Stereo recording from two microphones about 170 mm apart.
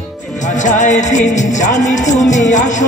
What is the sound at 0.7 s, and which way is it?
Music, 45° left (ahead or behind).